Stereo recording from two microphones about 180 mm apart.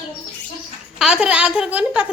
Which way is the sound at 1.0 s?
5° right (ahead or behind).